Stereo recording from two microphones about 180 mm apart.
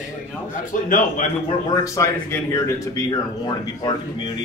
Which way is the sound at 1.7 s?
20° left (ahead or behind).